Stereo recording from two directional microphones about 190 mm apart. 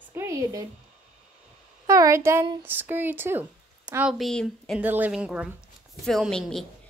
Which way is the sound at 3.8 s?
15° right (ahead or behind).